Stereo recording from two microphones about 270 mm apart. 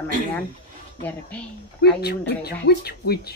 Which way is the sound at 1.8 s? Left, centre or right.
Left.